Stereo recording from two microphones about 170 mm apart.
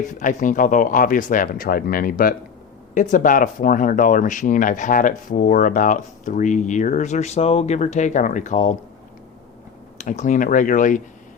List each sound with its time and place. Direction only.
0.1 s speech: 50° left (ahead or behind)
10.0 s speech: 45° left (ahead or behind)